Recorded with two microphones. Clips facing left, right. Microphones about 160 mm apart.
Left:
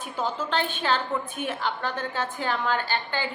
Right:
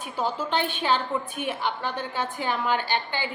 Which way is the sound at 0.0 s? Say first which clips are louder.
Right 1 dB; 10° right (ahead or behind).